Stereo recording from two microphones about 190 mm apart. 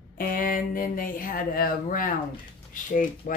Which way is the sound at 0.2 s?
50° left (ahead or behind).